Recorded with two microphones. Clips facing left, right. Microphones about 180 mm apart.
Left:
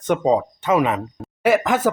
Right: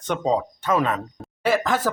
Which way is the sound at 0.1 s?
15° left (ahead or behind).